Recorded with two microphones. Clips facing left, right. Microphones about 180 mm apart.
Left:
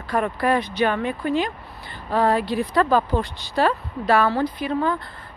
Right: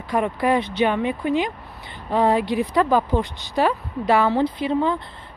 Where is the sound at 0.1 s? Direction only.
15° right (ahead or behind).